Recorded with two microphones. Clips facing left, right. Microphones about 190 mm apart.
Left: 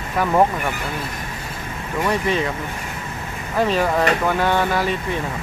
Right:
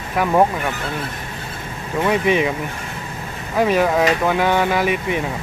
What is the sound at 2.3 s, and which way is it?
Speech, 15° right (ahead or behind).